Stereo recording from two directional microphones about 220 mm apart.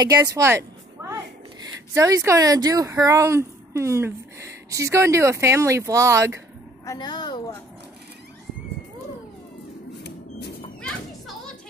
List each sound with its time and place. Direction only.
0.0 s speech: 15° right (ahead or behind)
6.9 s speech: 20° left (ahead or behind)
10.8 s children playing: 5° left (ahead or behind)